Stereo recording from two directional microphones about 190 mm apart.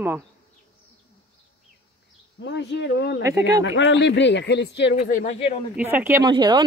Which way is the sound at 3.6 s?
75° left (ahead or behind).